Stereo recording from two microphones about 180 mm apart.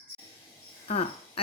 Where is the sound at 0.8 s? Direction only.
35° left (ahead or behind).